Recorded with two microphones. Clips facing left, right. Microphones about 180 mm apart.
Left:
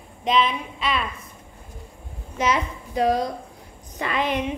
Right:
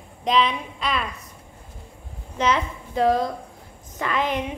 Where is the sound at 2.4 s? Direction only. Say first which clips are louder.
Right 1 dB; 15° left (ahead or behind).